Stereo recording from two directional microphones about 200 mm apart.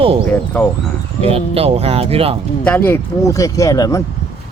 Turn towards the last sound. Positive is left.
turn(degrees=15)  # may be behind; listen again after turning